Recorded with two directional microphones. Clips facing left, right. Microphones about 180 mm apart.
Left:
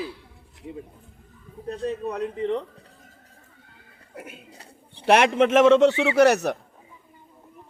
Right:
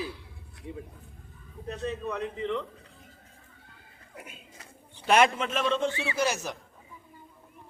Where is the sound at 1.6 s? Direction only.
35° left (ahead or behind).